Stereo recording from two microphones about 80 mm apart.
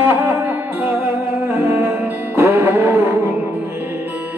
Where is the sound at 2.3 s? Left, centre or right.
Right.